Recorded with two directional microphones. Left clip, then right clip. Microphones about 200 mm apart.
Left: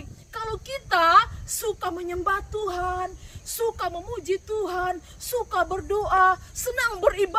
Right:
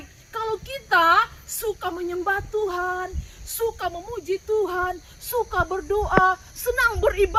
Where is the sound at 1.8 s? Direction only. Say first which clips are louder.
Right 1 dB; 20° left (ahead or behind).